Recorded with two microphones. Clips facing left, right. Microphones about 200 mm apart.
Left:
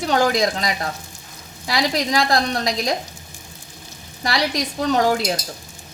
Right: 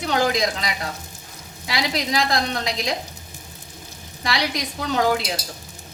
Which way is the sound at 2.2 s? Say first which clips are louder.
Left 3 dB; 35° left (ahead or behind).